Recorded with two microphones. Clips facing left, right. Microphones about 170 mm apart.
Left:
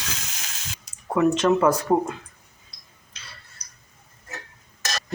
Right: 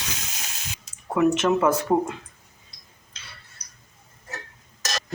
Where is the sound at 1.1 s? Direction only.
20° right (ahead or behind).